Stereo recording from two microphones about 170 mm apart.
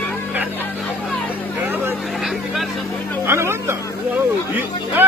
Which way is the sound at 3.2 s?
15° right (ahead or behind).